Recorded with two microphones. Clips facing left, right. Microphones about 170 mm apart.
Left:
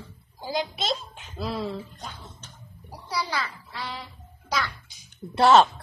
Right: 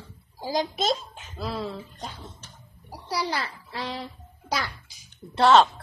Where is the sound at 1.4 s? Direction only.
Centre (ahead or behind).